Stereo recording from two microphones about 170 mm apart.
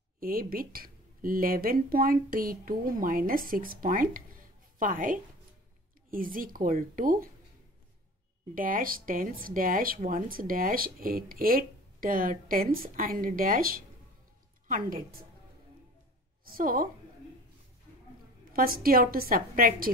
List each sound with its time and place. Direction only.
0.2 s speech: 60° right (ahead or behind)
8.5 s speech: 55° right (ahead or behind)
16.4 s speech: 55° right (ahead or behind)
18.5 s speech: 60° right (ahead or behind)